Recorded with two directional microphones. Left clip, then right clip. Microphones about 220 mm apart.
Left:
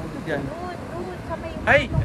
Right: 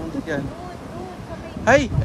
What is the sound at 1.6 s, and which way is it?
Speech, 20° right (ahead or behind).